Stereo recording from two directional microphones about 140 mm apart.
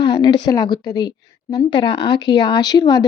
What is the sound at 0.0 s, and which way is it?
A woman's voice, 30° left (ahead or behind).